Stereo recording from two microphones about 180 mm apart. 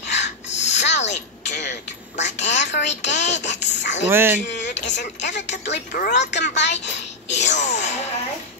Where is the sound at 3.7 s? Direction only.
80° left.